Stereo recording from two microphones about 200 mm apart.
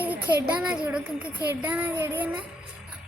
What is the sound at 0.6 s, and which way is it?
Child singing, 5° right (ahead or behind).